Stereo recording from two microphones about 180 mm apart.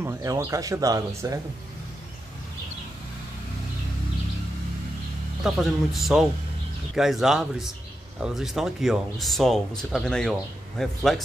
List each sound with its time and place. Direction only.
0.0 s speech: 15° right (ahead or behind)
5.4 s speech: centre (ahead or behind)